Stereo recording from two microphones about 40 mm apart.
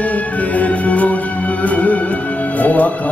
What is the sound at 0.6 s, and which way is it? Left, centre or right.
Music, left.